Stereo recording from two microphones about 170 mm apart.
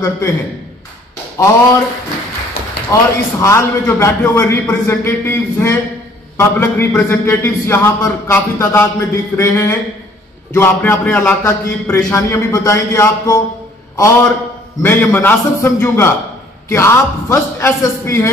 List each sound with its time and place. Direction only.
1.4 s a man's voice: 20° left (ahead or behind)
2.6 s a sound: 65° left (ahead or behind)
2.9 s a man's voice: 15° left (ahead or behind)